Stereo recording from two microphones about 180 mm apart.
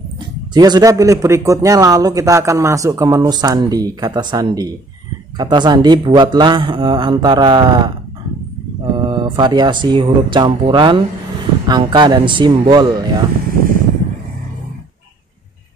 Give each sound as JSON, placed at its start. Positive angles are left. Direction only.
{"t": 0.6, "sound": "speech", "side_deg": -20}
{"t": 8.9, "sound": "speech", "side_deg": -25}